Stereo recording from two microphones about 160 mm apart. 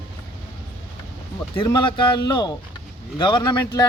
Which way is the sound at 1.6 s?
30° left (ahead or behind).